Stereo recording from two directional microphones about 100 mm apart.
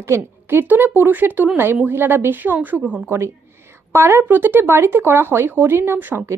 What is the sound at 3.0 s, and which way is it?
Speech, 25° right (ahead or behind).